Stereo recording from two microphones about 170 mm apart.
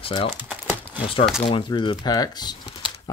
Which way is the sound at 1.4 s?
30° left (ahead or behind).